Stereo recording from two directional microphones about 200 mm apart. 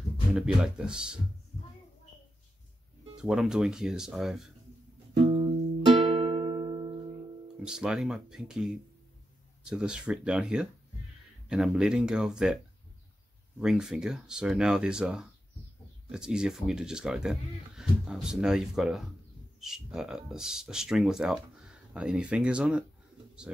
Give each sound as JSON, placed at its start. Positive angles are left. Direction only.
{"t": 0.3, "sound": "speech", "side_deg": -5}
{"t": 3.2, "sound": "speech", "side_deg": -5}
{"t": 5.1, "sound": "music", "side_deg": -30}
{"t": 7.6, "sound": "speech", "side_deg": -5}
{"t": 13.6, "sound": "speech", "side_deg": -5}